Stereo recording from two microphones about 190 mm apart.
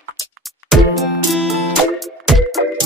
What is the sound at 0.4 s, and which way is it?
Music, centre (ahead or behind).